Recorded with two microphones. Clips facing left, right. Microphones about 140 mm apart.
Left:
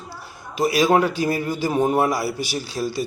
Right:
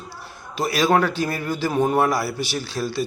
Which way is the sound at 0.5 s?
15° left (ahead or behind).